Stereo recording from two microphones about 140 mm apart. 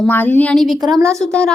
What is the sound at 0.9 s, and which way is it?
Speech, 20° right (ahead or behind).